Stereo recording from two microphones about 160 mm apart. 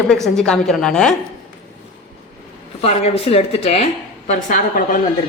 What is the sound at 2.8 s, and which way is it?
Speech, 40° left (ahead or behind).